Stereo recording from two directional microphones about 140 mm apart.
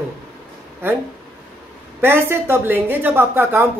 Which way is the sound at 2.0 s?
15° right (ahead or behind).